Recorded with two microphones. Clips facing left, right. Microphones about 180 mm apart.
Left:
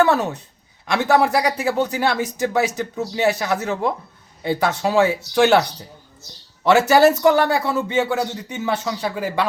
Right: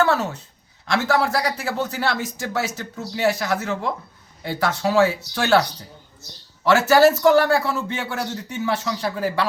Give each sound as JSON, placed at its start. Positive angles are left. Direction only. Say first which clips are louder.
{"t": 0.0, "sound": "a woman's voice", "louder": "left 3 dB", "side_deg": 15}
{"t": 6.7, "sound": "a man's voice", "louder": "left 1 dB", "side_deg": 20}